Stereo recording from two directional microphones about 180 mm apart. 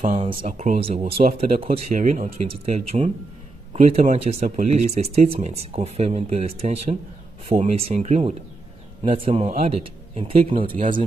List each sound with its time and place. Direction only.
0.1 s speech: 30° right (ahead or behind)
0.4 s speech: 45° right (ahead or behind)
0.7 s speech: 30° right (ahead or behind)
1.9 s speech: 45° right (ahead or behind)
2.2 s speech: 35° right (ahead or behind)